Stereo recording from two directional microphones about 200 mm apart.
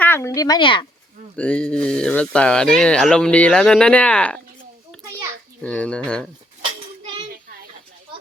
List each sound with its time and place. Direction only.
0.0 s speech: 10° left (ahead or behind)
1.4 s speech: 5° left (ahead or behind)
5.6 s speech: 5° left (ahead or behind)